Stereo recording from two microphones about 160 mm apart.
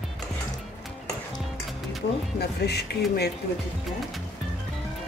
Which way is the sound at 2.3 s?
90° left.